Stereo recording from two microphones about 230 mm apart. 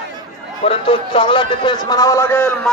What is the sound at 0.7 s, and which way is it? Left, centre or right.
A man's voice, left.